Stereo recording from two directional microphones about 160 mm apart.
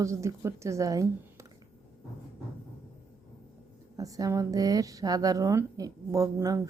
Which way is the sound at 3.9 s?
20° right (ahead or behind).